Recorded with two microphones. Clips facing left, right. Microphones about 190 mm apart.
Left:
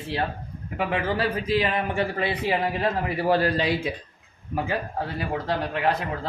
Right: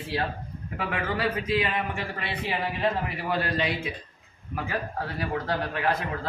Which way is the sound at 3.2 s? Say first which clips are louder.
Left 6 dB; 35° left (ahead or behind).